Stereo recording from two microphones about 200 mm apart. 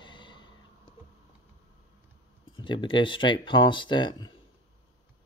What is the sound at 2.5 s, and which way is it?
Speech, 25° left (ahead or behind).